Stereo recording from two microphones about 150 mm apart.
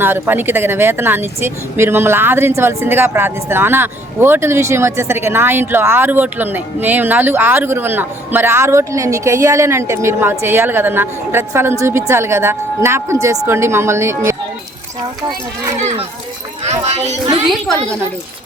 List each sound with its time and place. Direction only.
0.0 s speech: 15° right (ahead or behind)
15.8 s speech: 45° right (ahead or behind)